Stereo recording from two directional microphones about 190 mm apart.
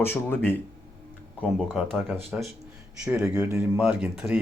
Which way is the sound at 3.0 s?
15° right (ahead or behind).